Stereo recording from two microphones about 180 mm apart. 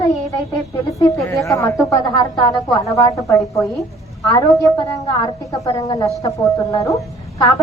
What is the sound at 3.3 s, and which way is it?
Speech, centre (ahead or behind).